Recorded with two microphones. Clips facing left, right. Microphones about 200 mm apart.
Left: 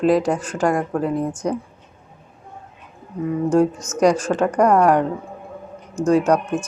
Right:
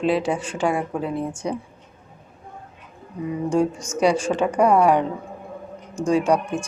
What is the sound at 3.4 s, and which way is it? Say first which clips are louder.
Speech: left 4 dB; 10° right (ahead or behind).